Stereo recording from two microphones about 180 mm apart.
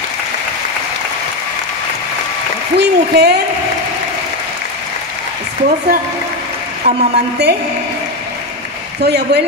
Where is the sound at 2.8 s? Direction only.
65° right (ahead or behind).